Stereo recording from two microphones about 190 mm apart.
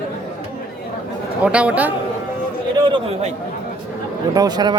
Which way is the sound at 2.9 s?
35° right (ahead or behind).